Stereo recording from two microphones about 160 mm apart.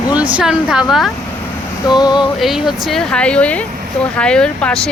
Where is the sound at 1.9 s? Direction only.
25° left (ahead or behind).